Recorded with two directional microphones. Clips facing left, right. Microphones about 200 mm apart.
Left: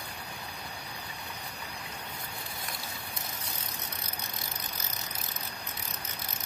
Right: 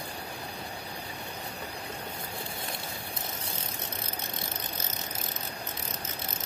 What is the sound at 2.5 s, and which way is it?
Bicycle, 30° right (ahead or behind).